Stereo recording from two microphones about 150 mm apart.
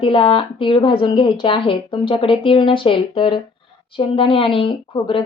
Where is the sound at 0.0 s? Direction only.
35° left (ahead or behind).